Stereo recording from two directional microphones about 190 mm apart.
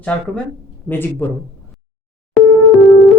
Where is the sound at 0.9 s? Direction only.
10° left (ahead or behind).